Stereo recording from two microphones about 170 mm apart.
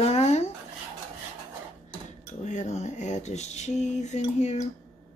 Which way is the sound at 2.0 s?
45° left (ahead or behind).